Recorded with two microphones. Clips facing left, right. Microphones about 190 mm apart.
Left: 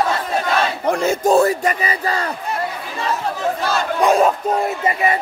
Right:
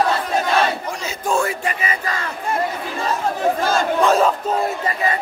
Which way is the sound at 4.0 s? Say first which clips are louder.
Left 2 dB; 15° left (ahead or behind).